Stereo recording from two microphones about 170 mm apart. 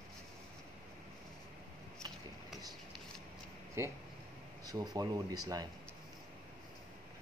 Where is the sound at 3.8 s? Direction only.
15° right (ahead or behind).